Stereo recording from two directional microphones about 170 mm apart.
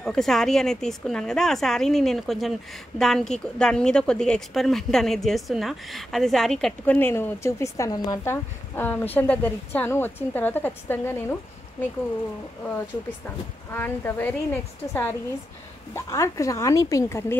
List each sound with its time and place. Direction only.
0.0 s a woman's voice: centre (ahead or behind)
13.7 s a woman's voice: 15° left (ahead or behind)